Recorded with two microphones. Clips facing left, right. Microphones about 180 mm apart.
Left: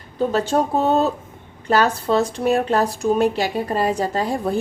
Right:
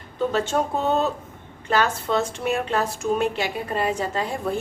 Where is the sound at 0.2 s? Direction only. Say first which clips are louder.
Left 3 dB; 35° left (ahead or behind).